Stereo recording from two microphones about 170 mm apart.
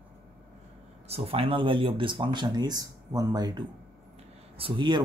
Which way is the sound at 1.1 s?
35° right (ahead or behind).